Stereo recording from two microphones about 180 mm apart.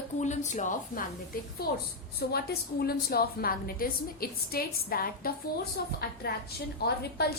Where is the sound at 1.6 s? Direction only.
55° left (ahead or behind).